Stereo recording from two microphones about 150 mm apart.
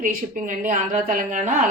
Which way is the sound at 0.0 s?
65° right (ahead or behind).